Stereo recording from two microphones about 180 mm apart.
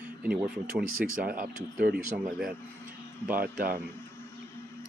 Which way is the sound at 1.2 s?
55° right (ahead or behind).